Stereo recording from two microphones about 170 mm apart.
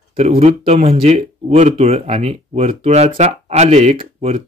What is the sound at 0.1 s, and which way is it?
Speech, 35° right (ahead or behind).